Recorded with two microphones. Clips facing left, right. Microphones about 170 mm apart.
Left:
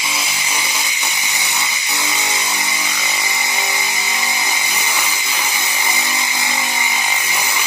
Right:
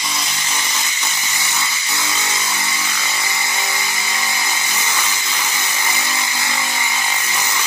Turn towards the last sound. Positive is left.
turn(degrees=15)  # may be behind; listen again after turning